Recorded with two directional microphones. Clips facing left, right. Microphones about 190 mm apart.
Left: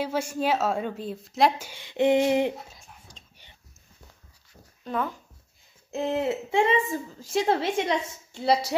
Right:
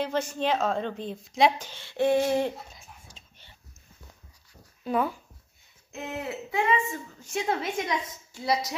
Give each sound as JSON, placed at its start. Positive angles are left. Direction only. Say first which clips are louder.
{"t": 0.0, "sound": "a woman's voice", "louder": "left 1 dB", "side_deg": 10}
{"t": 1.7, "sound": "a woman's voice", "louder": "left 2 dB", "side_deg": 15}
{"t": 2.7, "sound": "dog", "louder": "even", "side_deg": -5}
{"t": 4.8, "sound": "speech", "louder": "right 3 dB", "side_deg": -10}
{"t": 5.9, "sound": "a woman's voice", "louder": "left 8 dB", "side_deg": 30}